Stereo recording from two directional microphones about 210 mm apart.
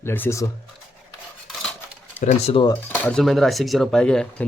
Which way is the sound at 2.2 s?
30° left (ahead or behind).